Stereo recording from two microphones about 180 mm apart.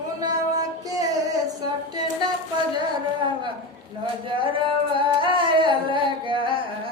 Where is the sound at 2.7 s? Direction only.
25° right (ahead or behind).